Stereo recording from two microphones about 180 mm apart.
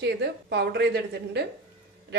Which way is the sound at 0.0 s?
65° right (ahead or behind).